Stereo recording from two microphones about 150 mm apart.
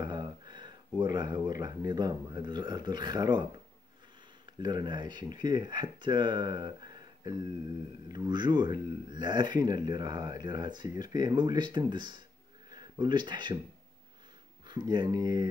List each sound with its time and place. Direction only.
0.0 s speech: 30° right (ahead or behind)
4.6 s speech: 30° right (ahead or behind)
14.7 s speech: 30° right (ahead or behind)